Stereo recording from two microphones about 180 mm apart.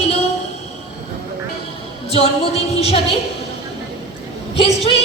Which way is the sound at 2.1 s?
35° left (ahead or behind).